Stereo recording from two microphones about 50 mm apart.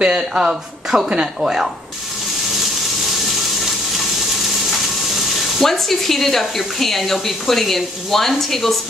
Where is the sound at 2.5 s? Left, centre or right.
Centre.